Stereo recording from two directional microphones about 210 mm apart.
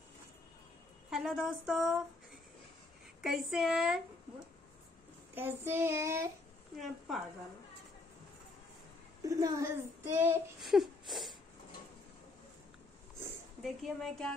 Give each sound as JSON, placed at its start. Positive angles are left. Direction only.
{"t": 1.1, "sound": "speech", "side_deg": -5}
{"t": 3.2, "sound": "speech", "side_deg": -5}
{"t": 5.3, "sound": "speech", "side_deg": -10}
{"t": 6.8, "sound": "speech", "side_deg": 0}
{"t": 9.2, "sound": "speech", "side_deg": -15}
{"t": 10.6, "sound": "a sound", "side_deg": 0}
{"t": 13.6, "sound": "speech", "side_deg": 0}